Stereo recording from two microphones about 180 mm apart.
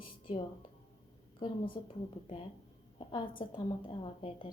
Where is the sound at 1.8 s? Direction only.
25° left (ahead or behind).